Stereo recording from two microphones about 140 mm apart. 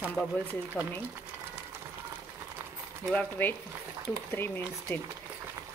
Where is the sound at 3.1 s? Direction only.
10° left (ahead or behind).